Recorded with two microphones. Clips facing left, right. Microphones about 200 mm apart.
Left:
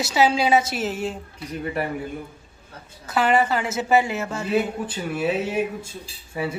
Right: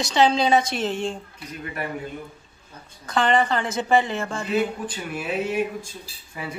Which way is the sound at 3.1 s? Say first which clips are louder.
Left 1 dB; 5° left (ahead or behind).